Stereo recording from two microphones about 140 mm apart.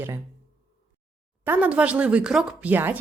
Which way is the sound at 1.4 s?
10° right (ahead or behind).